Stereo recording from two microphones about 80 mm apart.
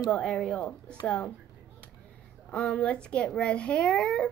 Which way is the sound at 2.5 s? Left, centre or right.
Centre.